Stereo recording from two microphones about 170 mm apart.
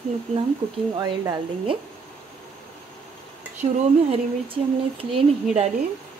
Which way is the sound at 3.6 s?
35° right (ahead or behind).